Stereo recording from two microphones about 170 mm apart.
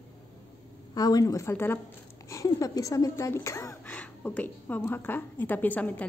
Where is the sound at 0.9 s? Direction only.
20° left (ahead or behind).